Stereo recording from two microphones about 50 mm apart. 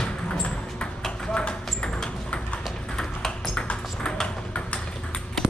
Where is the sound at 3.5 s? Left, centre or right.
Left.